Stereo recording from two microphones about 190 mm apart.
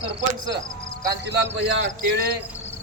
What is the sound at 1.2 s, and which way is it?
A man's voice, 65° right (ahead or behind).